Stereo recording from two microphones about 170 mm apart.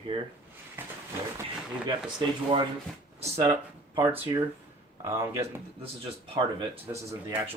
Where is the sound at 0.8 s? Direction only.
10° right (ahead or behind).